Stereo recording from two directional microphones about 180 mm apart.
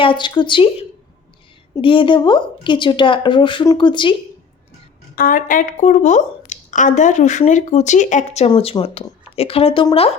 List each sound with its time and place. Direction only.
0.0 s a woman's voice: 25° left (ahead or behind)
5.1 s a woman's voice: 50° left (ahead or behind); by 9.8 s 30° left (ahead or behind)